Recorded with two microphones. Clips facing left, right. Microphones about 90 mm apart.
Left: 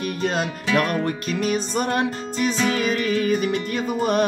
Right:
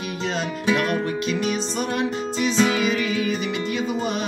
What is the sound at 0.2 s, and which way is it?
Music, 50° left (ahead or behind).